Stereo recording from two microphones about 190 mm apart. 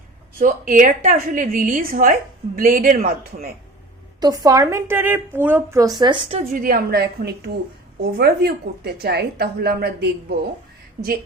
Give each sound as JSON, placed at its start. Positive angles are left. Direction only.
{"t": 0.3, "sound": "a woman's voice", "side_deg": -45}
{"t": 4.2, "sound": "a woman's voice", "side_deg": -20}
{"t": 6.5, "sound": "a woman's voice", "side_deg": -45}